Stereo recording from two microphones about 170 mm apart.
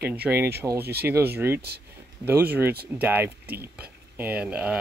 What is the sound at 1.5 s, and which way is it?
Speech, 70° right (ahead or behind).